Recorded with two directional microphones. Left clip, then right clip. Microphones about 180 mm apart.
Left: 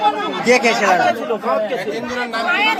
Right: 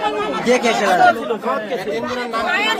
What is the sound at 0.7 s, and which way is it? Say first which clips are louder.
Speech: left 1 dB; 15° right (ahead or behind).